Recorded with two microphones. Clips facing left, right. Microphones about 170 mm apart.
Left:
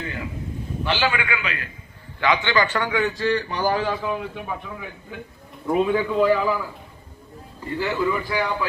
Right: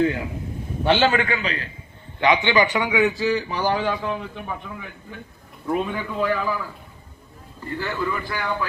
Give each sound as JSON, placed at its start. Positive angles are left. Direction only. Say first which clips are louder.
{"t": 0.9, "sound": "a man's voice", "louder": "right 5 dB", "side_deg": -40}
{"t": 2.2, "sound": "a man's voice", "louder": "right 2 dB", "side_deg": -20}
{"t": 5.6, "sound": "a man's voice", "louder": "left 4 dB", "side_deg": 5}
{"t": 7.8, "sound": "a man's voice", "louder": "left 4 dB", "side_deg": 10}